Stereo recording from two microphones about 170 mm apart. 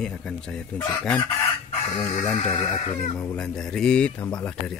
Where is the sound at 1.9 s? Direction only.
45° left (ahead or behind).